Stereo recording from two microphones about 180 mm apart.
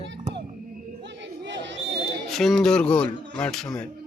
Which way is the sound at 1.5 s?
80° right.